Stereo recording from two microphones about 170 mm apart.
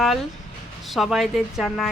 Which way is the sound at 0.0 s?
Centre (ahead or behind).